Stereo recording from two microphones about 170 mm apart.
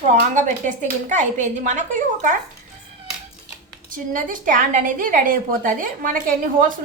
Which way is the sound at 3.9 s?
50° right (ahead or behind).